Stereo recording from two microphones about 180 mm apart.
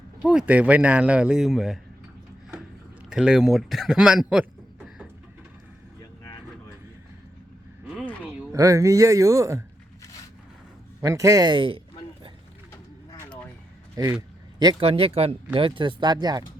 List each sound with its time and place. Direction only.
0.2 s speech: 5° right (ahead or behind)
3.1 s speech: 5° right (ahead or behind)
8.5 s speech: 15° right (ahead or behind)
11.0 s speech: 15° right (ahead or behind)
13.9 s a sound: 20° right (ahead or behind)
14.8 s speech: 30° right (ahead or behind)